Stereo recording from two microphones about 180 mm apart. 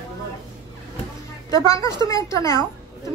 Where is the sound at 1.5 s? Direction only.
15° left (ahead or behind).